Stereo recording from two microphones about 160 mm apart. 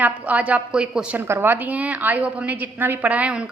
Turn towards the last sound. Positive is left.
turn(degrees=-5)  # may be behind; listen again after turning